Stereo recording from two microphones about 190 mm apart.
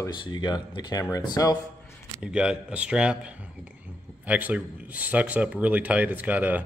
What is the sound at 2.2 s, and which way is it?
Speech, 5° right (ahead or behind).